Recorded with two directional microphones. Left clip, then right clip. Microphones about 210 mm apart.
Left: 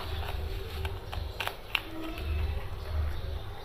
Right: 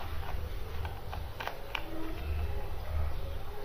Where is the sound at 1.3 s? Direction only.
10° left (ahead or behind).